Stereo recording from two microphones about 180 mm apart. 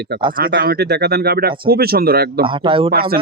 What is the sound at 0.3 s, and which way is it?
Speech, 50° right (ahead or behind).